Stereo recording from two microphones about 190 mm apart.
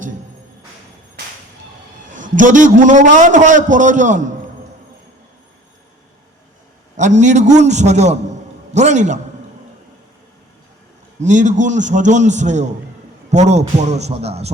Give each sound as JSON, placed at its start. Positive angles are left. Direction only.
{"t": 2.1, "sound": "a man's voice", "side_deg": -45}
{"t": 7.2, "sound": "a man's voice", "side_deg": -40}
{"t": 11.2, "sound": "a man's voice", "side_deg": -40}